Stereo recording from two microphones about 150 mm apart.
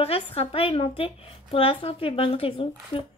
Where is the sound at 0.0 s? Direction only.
40° left (ahead or behind).